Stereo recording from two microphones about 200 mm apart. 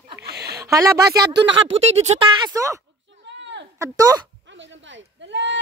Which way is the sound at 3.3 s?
65° right (ahead or behind).